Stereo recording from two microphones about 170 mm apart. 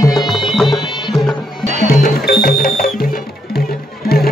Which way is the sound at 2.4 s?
55° left (ahead or behind).